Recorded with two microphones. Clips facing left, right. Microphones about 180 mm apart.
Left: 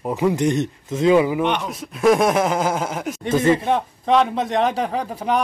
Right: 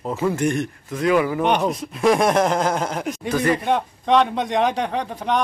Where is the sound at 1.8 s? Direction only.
Centre (ahead or behind).